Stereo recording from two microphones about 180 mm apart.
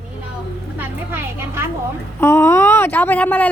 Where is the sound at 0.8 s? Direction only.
10° right (ahead or behind).